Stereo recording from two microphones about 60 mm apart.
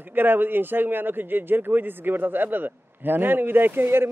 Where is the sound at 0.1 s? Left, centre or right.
Right.